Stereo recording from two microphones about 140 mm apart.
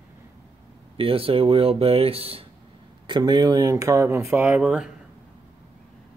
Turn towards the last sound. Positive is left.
turn(degrees=-5)  # may be behind; listen again after turning